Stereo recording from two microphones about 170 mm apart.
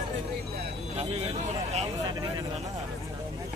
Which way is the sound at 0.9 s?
40° right (ahead or behind).